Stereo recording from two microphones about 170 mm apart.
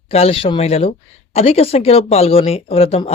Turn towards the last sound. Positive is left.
turn(degrees=35)  # may be behind; listen again after turning